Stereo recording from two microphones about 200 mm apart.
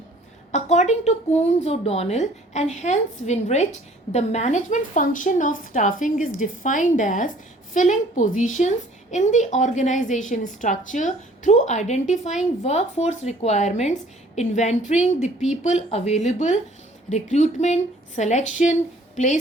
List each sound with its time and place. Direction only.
0.5 s a woman's voice: 35° left (ahead or behind)